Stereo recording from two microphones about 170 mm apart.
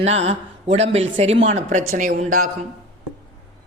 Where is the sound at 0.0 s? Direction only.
40° right (ahead or behind).